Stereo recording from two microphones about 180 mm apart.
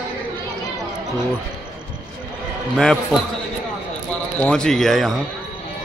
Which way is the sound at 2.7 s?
Centre (ahead or behind).